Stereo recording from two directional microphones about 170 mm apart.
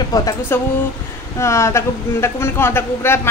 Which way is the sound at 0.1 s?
20° left (ahead or behind).